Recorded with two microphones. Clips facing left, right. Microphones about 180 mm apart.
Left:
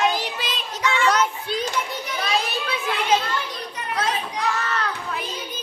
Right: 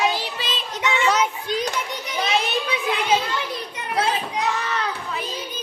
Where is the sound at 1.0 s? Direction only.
5° right (ahead or behind).